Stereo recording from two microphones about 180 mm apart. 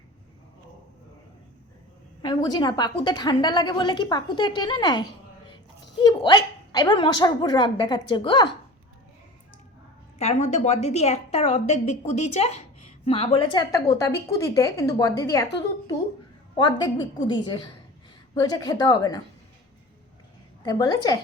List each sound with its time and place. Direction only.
2.2 s a woman's voice: 25° left (ahead or behind)
10.2 s a woman's voice: 35° left (ahead or behind); by 19.2 s 20° left (ahead or behind)
20.7 s a woman's voice: 20° left (ahead or behind)